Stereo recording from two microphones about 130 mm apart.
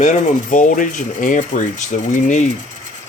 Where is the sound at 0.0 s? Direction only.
75° left (ahead or behind).